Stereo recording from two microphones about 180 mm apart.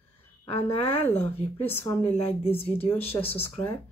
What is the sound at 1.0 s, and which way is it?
Speech, 10° left (ahead or behind).